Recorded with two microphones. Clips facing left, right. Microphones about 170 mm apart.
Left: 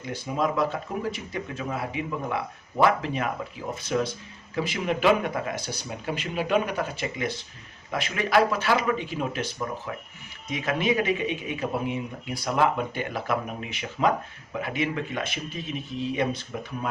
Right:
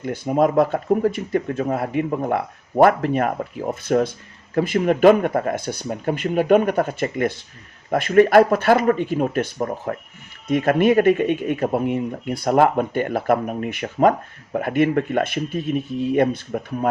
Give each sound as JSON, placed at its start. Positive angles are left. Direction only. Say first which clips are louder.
{"t": 0.0, "sound": "speech", "louder": "right 9 dB", "side_deg": -55}